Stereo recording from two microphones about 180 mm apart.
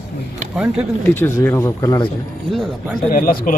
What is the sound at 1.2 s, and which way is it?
Speech, 10° left (ahead or behind).